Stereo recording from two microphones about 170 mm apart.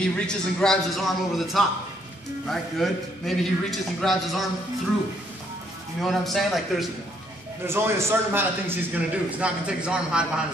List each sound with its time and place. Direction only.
0.0 s a man's voice: 5° left (ahead or behind)
6.0 s a man's voice: centre (ahead or behind)
7.6 s a man's voice: 15° right (ahead or behind)